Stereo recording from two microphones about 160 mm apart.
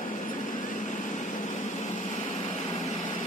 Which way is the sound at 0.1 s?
55° left (ahead or behind).